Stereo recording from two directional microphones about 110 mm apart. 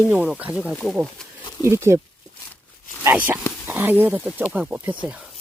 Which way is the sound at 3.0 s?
15° right (ahead or behind).